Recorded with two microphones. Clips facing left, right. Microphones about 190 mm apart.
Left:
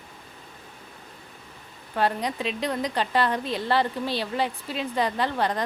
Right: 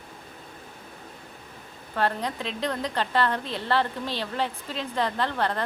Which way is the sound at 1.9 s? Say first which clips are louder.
Left 2 dB; 15° left (ahead or behind).